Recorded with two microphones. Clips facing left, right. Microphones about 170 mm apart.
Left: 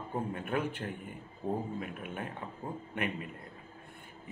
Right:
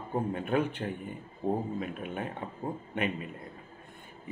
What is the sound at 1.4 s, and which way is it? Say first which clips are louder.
Speech: right 4 dB; 25° right (ahead or behind).